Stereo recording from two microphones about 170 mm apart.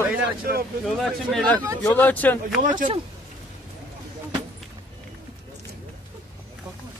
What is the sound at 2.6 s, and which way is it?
Speech, 50° right (ahead or behind).